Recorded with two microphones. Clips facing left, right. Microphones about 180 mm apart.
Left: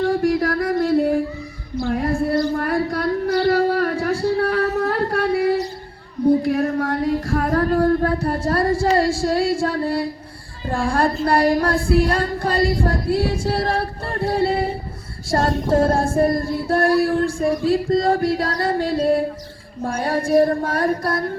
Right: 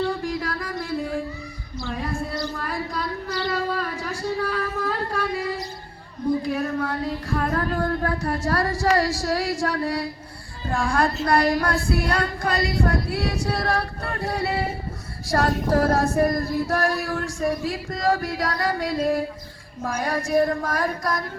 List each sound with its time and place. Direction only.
0.0 s music: 55° left (ahead or behind)
1.7 s female singing: 60° left (ahead or behind)
4.4 s singing: 65° left (ahead or behind)
4.8 s a sound: 65° left (ahead or behind); by 10.1 s 30° left (ahead or behind)
10.7 s female singing: 30° left (ahead or behind)